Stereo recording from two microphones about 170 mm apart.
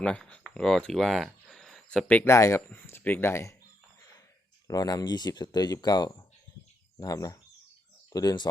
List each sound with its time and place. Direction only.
0.0 s speech: 5° left (ahead or behind)
4.7 s speech: 20° left (ahead or behind)